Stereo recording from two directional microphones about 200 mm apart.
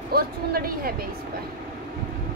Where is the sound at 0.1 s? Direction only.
50° right (ahead or behind).